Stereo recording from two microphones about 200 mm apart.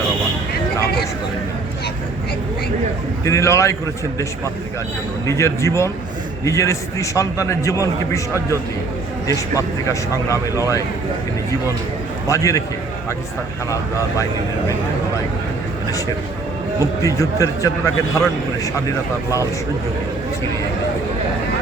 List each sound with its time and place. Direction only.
3.2 s a man's voice: 15° left (ahead or behind)
5.2 s a man's voice: 15° left (ahead or behind)
9.2 s a man's voice: 15° left (ahead or behind)
12.3 s a man's voice: 15° left (ahead or behind)
17.0 s a man's voice: 15° left (ahead or behind)